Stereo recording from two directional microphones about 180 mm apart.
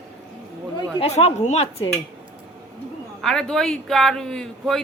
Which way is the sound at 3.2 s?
5° left (ahead or behind).